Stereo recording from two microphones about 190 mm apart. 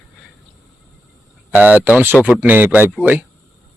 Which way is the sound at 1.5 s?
10° right (ahead or behind).